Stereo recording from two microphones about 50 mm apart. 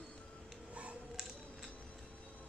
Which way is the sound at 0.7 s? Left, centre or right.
Right.